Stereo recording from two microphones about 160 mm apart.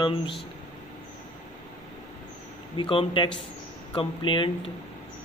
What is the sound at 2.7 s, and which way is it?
Speech, 30° left (ahead or behind).